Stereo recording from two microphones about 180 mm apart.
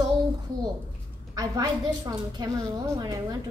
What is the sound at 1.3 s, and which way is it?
A woman's voice, 20° right (ahead or behind).